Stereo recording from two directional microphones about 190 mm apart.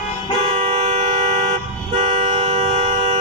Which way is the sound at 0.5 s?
35° right (ahead or behind).